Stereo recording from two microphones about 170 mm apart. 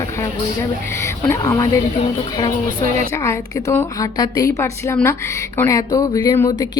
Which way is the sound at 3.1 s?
20° left (ahead or behind).